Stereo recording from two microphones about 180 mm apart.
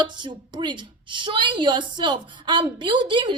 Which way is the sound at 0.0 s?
25° right (ahead or behind).